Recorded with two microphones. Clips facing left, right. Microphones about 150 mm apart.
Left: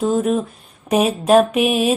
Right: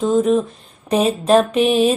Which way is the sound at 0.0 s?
10° left (ahead or behind).